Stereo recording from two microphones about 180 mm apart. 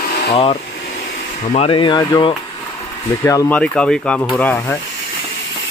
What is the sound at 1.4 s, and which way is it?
Speech, 35° left (ahead or behind).